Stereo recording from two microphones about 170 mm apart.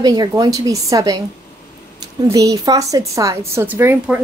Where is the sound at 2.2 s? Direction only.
20° right (ahead or behind).